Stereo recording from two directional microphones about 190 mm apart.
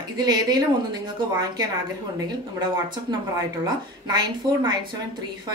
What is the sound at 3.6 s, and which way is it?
A woman's voice, 20° right (ahead or behind).